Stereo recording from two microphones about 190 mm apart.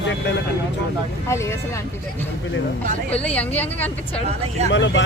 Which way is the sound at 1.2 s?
15° left (ahead or behind).